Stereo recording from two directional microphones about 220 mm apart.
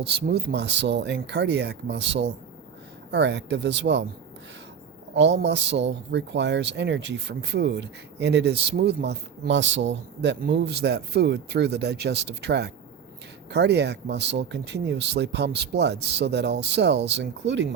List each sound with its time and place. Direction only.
0.0 s speech: 50° right (ahead or behind)
5.1 s speech: 50° right (ahead or behind)